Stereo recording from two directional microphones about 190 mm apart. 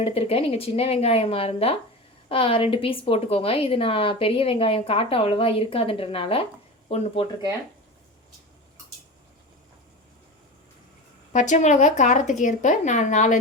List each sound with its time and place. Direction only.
0.0 s a woman's voice: 30° left (ahead or behind)
11.3 s speech: 40° left (ahead or behind)